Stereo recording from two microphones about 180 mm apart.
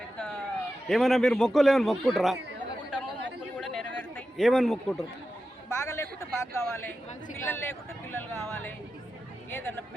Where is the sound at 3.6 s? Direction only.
5° left (ahead or behind).